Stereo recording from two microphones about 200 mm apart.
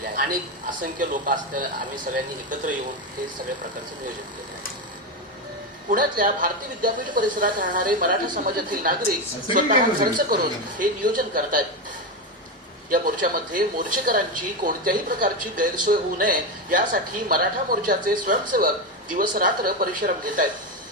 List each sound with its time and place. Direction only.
0.8 s a woman's voice: 45° right (ahead or behind)
5.9 s a woman's voice: 45° right (ahead or behind)
12.9 s a woman's voice: 45° right (ahead or behind)